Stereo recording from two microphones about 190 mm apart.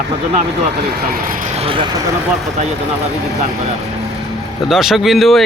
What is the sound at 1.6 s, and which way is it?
Speech, 30° right (ahead or behind).